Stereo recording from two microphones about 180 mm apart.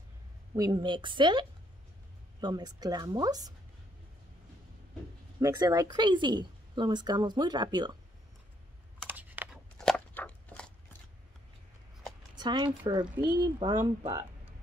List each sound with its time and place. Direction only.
0.6 s a woman's voice: 25° right (ahead or behind)
2.4 s a woman's voice: 20° right (ahead or behind)
5.4 s a woman's voice: 20° right (ahead or behind)
9.0 s computer keyboard: 10° right (ahead or behind)
9.8 s a sound: 5° left (ahead or behind)
12.4 s a woman's voice: 25° right (ahead or behind)